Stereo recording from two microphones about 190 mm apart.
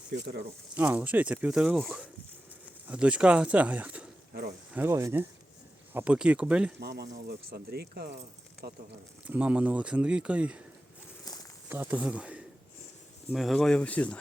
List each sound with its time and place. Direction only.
0.1 s speech: 65° right (ahead or behind)
0.7 s speech: 10° right (ahead or behind)
6.7 s speech: 60° right (ahead or behind)
9.2 s speech: 5° right (ahead or behind)
11.3 s a sound: 20° left (ahead or behind)
11.7 s a man's voice: 10° right (ahead or behind); by 14.2 s 5° left (ahead or behind)